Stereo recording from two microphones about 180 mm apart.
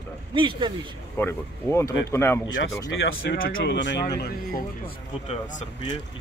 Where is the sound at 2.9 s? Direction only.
90° left; by 4.3 s 65° left (ahead or behind).